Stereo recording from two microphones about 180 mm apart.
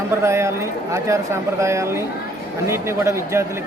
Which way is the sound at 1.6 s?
15° right (ahead or behind).